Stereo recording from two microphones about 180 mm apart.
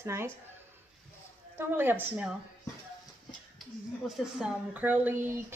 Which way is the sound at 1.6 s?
10° right (ahead or behind).